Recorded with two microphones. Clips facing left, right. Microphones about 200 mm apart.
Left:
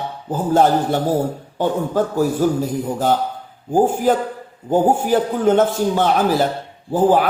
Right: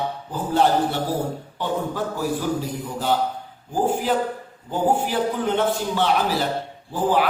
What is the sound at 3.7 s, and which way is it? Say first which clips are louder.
A man's voice: left 6 dB; 45° left (ahead or behind).